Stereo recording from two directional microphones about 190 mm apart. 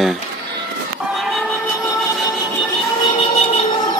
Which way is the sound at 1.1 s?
Centre (ahead or behind).